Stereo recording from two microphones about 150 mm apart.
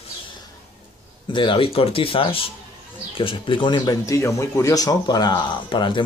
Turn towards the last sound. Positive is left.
turn(degrees=30)  # may be behind; listen again after turning